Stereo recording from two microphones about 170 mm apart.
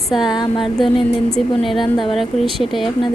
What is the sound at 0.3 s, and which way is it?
Speech, 25° left (ahead or behind).